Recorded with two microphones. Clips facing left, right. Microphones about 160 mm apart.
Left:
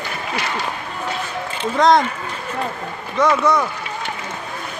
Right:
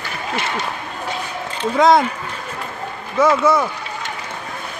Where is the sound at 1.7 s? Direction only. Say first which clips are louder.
Right 1 dB; 5° right (ahead or behind).